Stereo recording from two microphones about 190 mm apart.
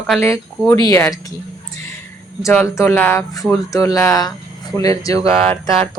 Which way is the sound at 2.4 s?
15° left (ahead or behind).